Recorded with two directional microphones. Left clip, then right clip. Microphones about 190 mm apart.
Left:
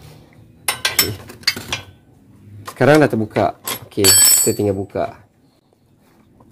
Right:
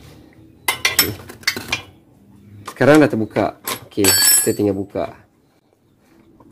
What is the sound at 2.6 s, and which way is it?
Speech, centre (ahead or behind).